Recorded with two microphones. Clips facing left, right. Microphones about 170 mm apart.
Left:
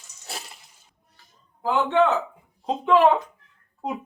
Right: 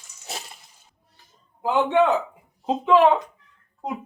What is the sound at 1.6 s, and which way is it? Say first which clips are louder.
Speech: right 1 dB; 15° right (ahead or behind).